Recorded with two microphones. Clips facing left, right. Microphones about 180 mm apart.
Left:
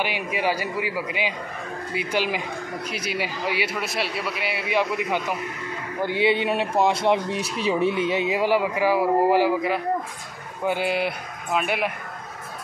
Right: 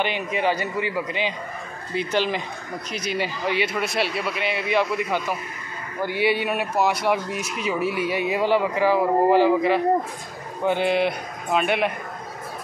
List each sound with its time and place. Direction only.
0.0 s a man's voice: 10° left (ahead or behind)
6.0 s a man's voice: 25° left (ahead or behind); by 11.9 s 5° left (ahead or behind)